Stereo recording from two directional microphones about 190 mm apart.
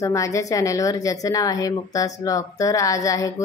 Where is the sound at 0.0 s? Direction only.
15° left (ahead or behind).